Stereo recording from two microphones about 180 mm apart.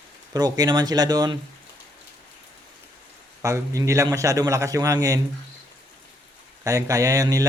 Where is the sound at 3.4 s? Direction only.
15° right (ahead or behind).